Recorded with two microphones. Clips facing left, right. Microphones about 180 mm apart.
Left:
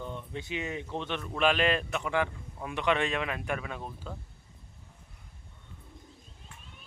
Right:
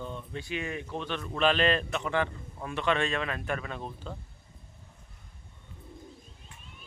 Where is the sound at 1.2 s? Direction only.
5° left (ahead or behind).